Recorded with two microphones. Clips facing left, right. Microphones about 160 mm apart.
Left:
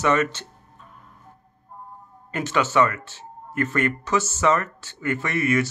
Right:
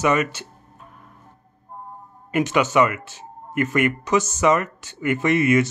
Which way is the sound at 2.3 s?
15° right (ahead or behind).